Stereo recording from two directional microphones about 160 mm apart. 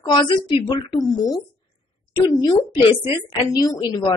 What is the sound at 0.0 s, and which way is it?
Speech, 30° left (ahead or behind).